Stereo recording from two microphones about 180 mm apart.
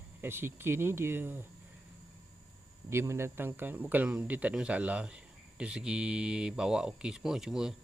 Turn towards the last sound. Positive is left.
turn(degrees=-5)  # may be behind; listen again after turning